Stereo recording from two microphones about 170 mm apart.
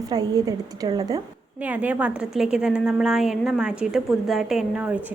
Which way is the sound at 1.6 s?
10° right (ahead or behind).